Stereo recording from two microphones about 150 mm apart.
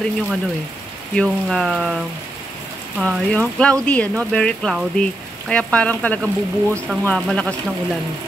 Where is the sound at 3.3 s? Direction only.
5° left (ahead or behind).